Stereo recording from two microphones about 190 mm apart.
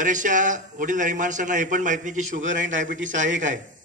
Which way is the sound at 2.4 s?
80° right.